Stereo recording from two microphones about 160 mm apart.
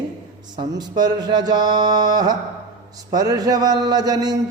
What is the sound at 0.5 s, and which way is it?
A man's voice, 25° right (ahead or behind).